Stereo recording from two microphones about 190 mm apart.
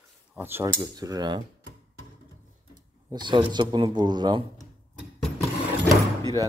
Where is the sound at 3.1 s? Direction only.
25° right (ahead or behind).